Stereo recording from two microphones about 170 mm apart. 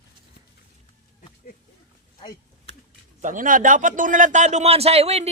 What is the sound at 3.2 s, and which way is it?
Speech, 50° right (ahead or behind).